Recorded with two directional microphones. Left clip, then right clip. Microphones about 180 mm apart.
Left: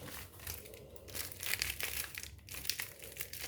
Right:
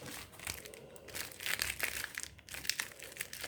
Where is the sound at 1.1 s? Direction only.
5° left (ahead or behind).